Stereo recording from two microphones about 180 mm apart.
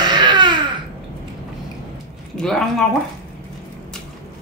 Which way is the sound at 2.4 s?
Centre (ahead or behind).